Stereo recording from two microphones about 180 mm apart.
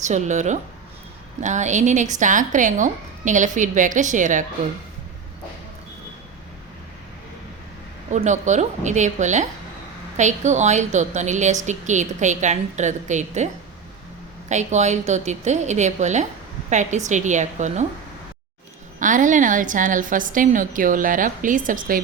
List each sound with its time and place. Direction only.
0.0 s a woman's voice: 40° right (ahead or behind)
8.1 s a woman's voice: 40° right (ahead or behind)
14.5 s a woman's voice: 40° right (ahead or behind)
18.9 s speech: 45° right (ahead or behind)